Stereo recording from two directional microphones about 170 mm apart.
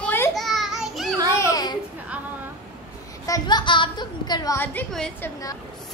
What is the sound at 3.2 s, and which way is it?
A woman's voice, 20° left (ahead or behind).